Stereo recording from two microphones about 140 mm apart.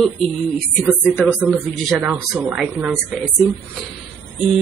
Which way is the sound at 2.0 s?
5° right (ahead or behind).